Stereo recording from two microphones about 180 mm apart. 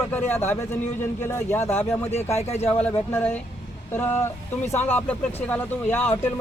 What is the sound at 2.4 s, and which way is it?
Speech, 35° left (ahead or behind).